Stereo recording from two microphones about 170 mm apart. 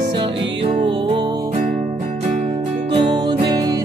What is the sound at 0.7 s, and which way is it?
Music, 30° right (ahead or behind).